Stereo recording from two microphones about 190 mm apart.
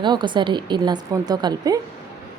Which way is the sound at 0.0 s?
25° right (ahead or behind).